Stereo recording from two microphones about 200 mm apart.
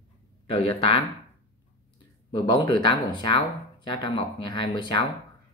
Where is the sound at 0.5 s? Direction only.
30° left (ahead or behind).